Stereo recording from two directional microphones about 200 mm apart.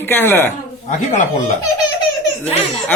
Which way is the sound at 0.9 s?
40° left (ahead or behind).